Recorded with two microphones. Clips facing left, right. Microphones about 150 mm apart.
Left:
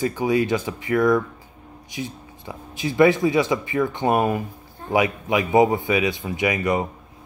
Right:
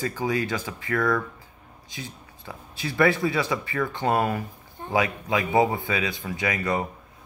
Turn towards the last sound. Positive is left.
turn(degrees=20)  # may be behind; listen again after turning